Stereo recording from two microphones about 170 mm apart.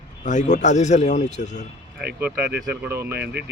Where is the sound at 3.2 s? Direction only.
75° right (ahead or behind).